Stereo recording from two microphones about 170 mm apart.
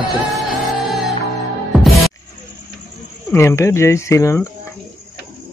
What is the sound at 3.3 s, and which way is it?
Speech, 15° left (ahead or behind).